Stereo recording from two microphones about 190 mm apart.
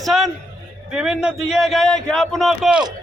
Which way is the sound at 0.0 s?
Centre (ahead or behind).